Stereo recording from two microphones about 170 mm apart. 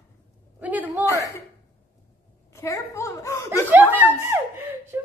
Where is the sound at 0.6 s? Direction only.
10° right (ahead or behind).